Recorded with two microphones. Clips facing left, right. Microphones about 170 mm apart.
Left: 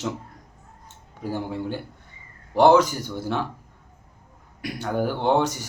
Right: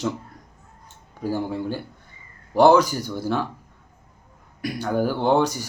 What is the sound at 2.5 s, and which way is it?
Speech, 25° left (ahead or behind).